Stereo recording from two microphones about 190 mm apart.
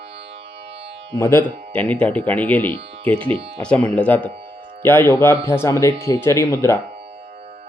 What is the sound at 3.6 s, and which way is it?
Speech, 5° left (ahead or behind).